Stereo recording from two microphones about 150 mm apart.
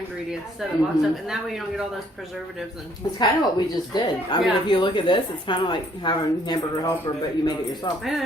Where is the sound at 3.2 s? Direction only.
30° left (ahead or behind).